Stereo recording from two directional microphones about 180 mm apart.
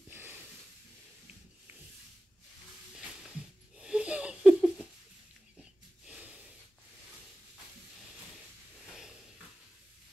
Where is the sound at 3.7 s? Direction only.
5° right (ahead or behind).